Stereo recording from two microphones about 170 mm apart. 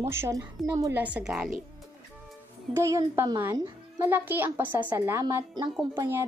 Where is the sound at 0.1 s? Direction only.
15° right (ahead or behind).